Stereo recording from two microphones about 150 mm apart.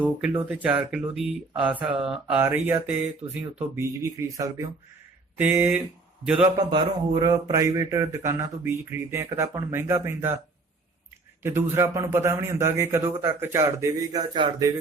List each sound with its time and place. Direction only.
0.0 s a man's voice: 5° right (ahead or behind)
5.4 s a man's voice: 15° right (ahead or behind)
6.6 s speech: 30° right (ahead or behind)
11.4 s a man's voice: 15° right (ahead or behind)